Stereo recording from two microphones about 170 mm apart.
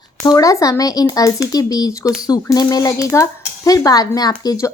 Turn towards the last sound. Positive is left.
turn(degrees=20)  # may be behind; listen again after turning